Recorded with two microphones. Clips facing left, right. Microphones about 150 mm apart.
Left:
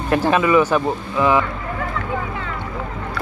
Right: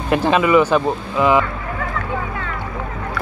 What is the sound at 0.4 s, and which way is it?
Speech, 10° right (ahead or behind).